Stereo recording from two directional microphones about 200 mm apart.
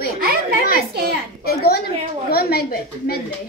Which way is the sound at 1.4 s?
50° left (ahead or behind).